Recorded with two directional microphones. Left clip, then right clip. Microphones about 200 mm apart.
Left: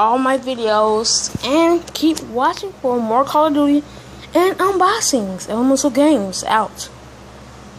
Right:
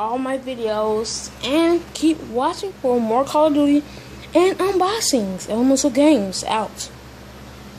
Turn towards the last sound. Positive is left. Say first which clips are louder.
# left 4 dB
turn(degrees=5)  # may be behind; listen again after turning